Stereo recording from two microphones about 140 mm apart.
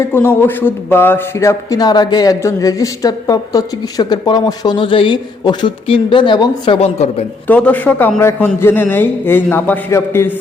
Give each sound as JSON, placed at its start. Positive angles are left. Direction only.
{"t": 0.0, "sound": "speech", "side_deg": 15}
{"t": 6.7, "sound": "speech", "side_deg": 50}
{"t": 7.4, "sound": "a man's voice", "side_deg": 10}